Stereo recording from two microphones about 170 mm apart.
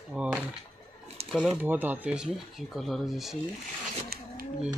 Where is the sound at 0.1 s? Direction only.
5° right (ahead or behind).